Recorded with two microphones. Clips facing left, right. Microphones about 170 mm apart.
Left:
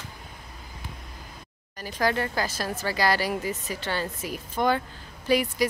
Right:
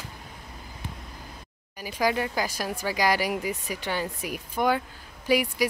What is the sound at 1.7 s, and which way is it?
Speech, 10° right (ahead or behind).